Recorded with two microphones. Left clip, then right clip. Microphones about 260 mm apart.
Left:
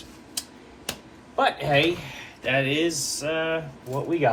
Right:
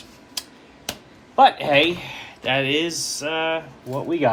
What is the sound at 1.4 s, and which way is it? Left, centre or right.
Speech, right.